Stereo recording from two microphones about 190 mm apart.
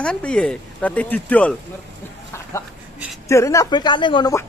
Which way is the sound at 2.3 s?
15° left (ahead or behind).